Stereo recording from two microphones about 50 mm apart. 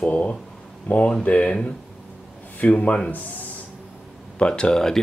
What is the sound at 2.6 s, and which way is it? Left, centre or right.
Speech, left.